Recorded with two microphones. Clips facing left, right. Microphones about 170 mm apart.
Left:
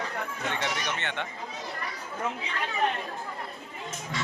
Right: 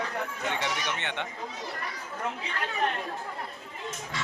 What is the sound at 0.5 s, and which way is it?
Speech, 15° right (ahead or behind).